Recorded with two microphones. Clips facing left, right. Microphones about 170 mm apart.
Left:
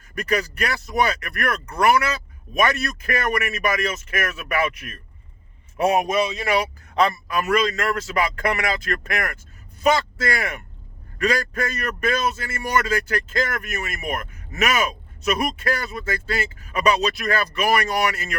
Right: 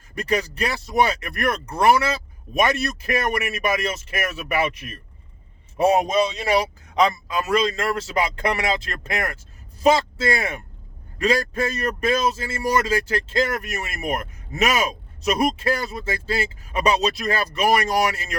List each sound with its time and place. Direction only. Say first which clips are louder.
0.2 s a man's voice: even; 25° right (ahead or behind)
6.9 s speech: even; 20° right (ahead or behind)